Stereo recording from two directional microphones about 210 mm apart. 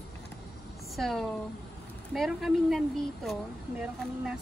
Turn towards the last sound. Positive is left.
turn(degrees=-5)  # may be behind; listen again after turning